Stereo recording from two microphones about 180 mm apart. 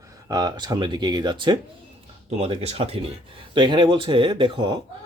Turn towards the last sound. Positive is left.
turn(degrees=-25)  # may be behind; listen again after turning